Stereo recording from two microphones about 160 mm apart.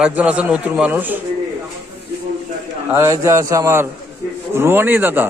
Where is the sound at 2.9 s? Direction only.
15° right (ahead or behind).